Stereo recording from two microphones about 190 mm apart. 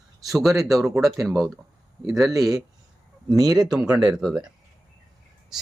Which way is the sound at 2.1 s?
Centre (ahead or behind).